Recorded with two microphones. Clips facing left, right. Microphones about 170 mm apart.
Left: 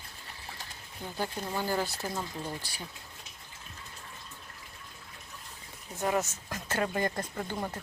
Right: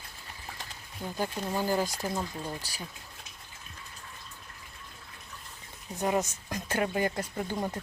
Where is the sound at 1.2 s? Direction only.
15° right (ahead or behind).